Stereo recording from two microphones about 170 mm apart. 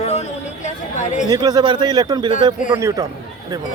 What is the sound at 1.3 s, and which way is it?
Speech, 25° right (ahead or behind).